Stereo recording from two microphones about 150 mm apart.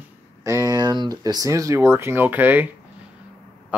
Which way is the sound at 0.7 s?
30° right (ahead or behind).